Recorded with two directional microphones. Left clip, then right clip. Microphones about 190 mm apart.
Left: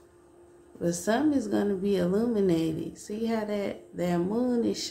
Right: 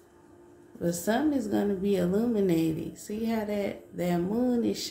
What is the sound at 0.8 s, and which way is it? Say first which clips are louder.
A woman's voice: left 1 dB; 15° left (ahead or behind).